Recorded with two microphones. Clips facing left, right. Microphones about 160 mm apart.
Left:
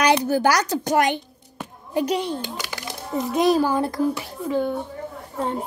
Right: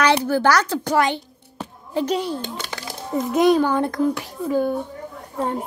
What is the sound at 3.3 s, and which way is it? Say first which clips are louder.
Speech: right 2 dB; centre (ahead or behind).